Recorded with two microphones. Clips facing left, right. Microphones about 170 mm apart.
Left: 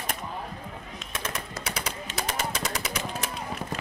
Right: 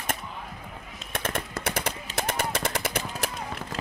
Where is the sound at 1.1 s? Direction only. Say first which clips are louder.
Right 4 dB; 55° right (ahead or behind).